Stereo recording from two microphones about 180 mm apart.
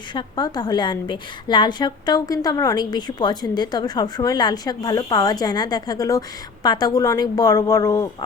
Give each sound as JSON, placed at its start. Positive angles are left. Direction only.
{"t": 0.1, "sound": "a woman's voice", "side_deg": 25}